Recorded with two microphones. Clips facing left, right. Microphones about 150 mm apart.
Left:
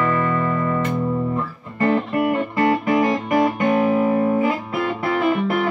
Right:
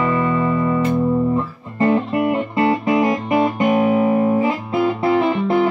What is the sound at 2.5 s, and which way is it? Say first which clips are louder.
Music: right 1 dB; 25° right (ahead or behind).